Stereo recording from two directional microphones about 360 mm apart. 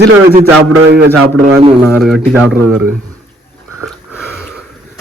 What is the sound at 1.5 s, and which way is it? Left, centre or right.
Speech, centre.